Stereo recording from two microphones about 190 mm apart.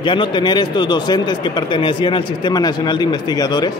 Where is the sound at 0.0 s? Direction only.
25° left (ahead or behind).